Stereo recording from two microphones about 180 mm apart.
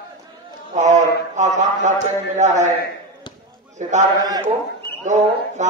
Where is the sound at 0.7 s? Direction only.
45° right (ahead or behind).